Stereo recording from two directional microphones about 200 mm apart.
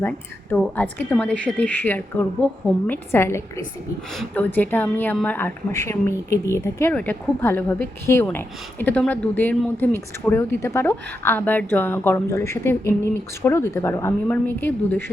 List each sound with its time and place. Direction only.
0.5 s speech: 5° left (ahead or behind)